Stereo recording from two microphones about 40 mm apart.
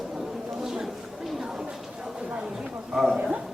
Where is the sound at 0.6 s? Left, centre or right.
Centre.